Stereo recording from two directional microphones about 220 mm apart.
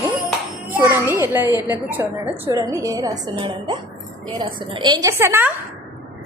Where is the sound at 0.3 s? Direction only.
5° right (ahead or behind).